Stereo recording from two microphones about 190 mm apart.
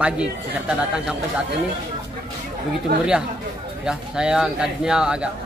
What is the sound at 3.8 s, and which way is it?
Speech, 5° right (ahead or behind).